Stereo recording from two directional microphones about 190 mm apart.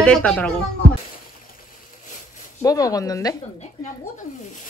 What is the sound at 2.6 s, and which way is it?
Speech, 20° left (ahead or behind).